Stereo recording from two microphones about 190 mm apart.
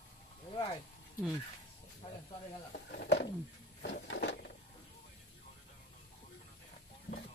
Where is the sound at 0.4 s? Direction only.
25° left (ahead or behind).